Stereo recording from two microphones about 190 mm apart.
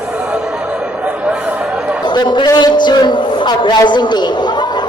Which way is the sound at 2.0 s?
25° left (ahead or behind).